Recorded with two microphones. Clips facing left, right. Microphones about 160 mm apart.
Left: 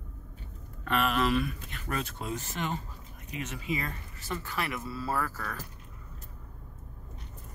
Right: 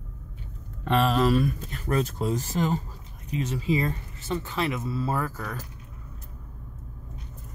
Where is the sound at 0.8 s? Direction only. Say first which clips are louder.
Right 5 dB; 30° right (ahead or behind).